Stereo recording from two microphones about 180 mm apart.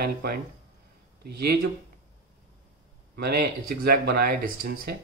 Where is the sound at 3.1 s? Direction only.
60° right (ahead or behind).